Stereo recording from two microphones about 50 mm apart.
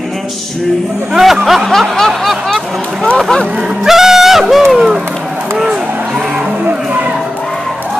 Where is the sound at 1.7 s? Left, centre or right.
Centre.